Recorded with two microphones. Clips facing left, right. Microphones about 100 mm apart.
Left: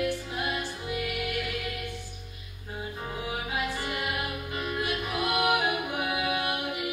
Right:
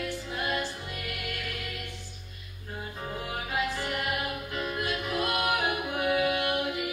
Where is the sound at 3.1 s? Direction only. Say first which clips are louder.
Even; 10° left (ahead or behind).